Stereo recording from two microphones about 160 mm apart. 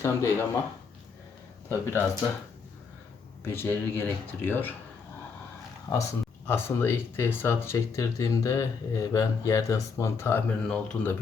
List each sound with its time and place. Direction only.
0.0 s speech: 15° left (ahead or behind)
1.7 s speech: 15° left (ahead or behind)
3.4 s speech: 15° left (ahead or behind)
5.9 s speech: 25° left (ahead or behind)
6.5 s speech: 15° left (ahead or behind)